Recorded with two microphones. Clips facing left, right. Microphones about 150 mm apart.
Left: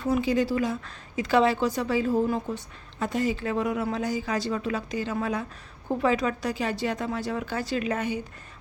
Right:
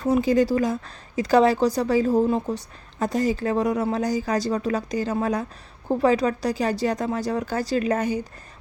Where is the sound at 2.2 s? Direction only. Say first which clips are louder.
Right 4 dB; 30° right (ahead or behind).